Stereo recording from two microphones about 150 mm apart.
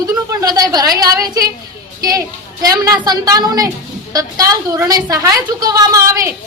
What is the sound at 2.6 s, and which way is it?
A woman's voice, 25° right (ahead or behind).